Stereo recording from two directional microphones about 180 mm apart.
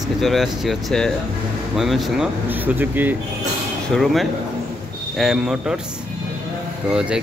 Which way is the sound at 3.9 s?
Centre (ahead or behind).